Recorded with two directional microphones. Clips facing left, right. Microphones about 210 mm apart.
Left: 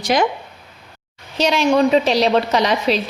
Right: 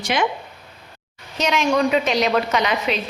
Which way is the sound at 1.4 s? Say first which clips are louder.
Left 4 dB; 35° left (ahead or behind).